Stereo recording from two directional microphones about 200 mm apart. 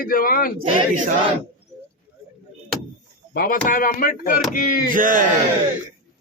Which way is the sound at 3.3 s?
45° left (ahead or behind).